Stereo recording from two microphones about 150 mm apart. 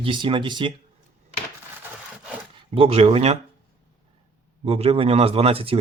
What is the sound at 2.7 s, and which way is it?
Speech, 40° right (ahead or behind).